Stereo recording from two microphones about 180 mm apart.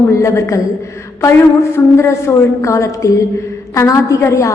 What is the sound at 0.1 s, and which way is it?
Speech, 15° left (ahead or behind).